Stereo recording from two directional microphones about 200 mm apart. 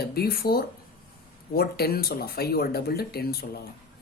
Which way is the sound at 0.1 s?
50° left (ahead or behind).